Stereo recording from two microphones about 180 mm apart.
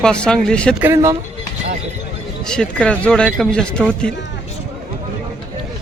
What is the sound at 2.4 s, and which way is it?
Speech, 5° left (ahead or behind).